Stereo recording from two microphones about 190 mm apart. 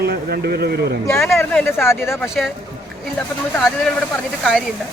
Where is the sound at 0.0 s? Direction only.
55° right (ahead or behind).